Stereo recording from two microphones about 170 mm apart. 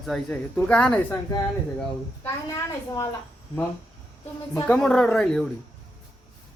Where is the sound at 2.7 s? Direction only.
20° left (ahead or behind).